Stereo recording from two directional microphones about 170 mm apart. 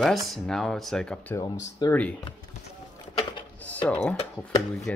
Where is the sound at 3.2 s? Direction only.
30° left (ahead or behind).